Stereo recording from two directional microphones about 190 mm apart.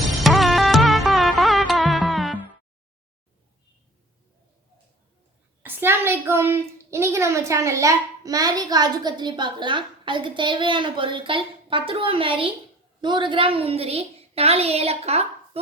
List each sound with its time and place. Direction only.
0.0 s music: centre (ahead or behind)
5.6 s a child's voice: 10° right (ahead or behind); by 15.6 s 35° right (ahead or behind)